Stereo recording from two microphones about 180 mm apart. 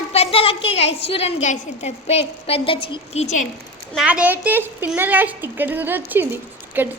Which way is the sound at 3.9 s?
5° right (ahead or behind).